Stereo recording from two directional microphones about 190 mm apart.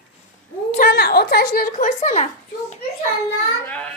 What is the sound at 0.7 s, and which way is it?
Speech, 45° left (ahead or behind).